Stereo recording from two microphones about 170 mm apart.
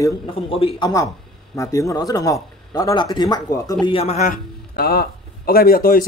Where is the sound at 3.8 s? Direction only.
35° left (ahead or behind).